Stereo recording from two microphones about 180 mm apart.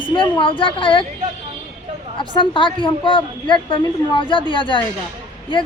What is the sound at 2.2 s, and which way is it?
Speech, 30° left (ahead or behind).